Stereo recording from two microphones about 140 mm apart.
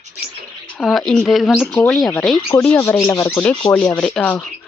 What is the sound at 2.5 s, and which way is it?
Speech, 15° left (ahead or behind).